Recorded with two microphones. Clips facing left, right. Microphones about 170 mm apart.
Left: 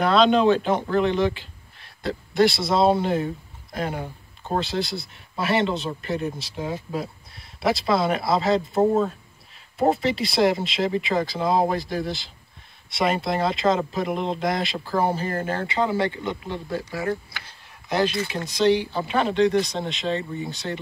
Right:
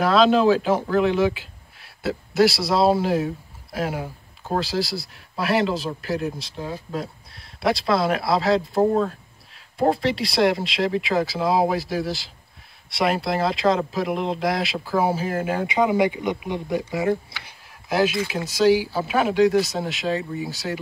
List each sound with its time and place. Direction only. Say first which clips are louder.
0.0 s speech: right 1 dB; 5° right (ahead or behind)
6.5 s speech: left 2 dB; 15° left (ahead or behind)
6.9 s speech: even; centre (ahead or behind); by 17.6 s 20° right (ahead or behind)
17.8 s speech: right 2 dB; 5° right (ahead or behind)